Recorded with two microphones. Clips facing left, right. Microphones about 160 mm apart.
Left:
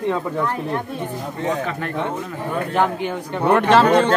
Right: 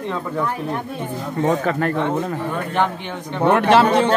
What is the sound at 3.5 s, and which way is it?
Speech, 10° right (ahead or behind).